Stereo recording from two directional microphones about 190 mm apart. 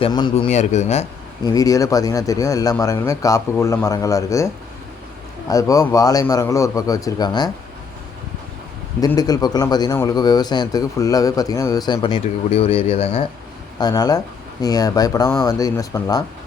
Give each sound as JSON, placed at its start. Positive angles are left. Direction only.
{"t": 0.0, "sound": "a man's voice", "side_deg": 25}
{"t": 0.5, "sound": "speech", "side_deg": 35}
{"t": 1.5, "sound": "speech", "side_deg": 15}
{"t": 5.5, "sound": "a man's voice", "side_deg": 15}
{"t": 9.0, "sound": "a man's voice", "side_deg": 20}